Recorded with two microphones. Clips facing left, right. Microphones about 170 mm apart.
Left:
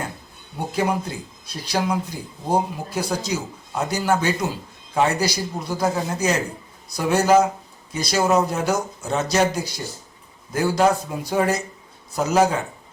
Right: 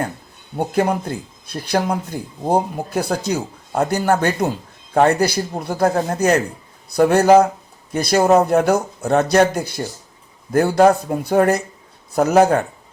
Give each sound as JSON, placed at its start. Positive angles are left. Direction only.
{"t": 0.7, "sound": "speech", "side_deg": -55}